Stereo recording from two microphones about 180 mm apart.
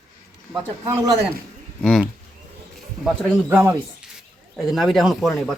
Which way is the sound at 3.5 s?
15° right (ahead or behind).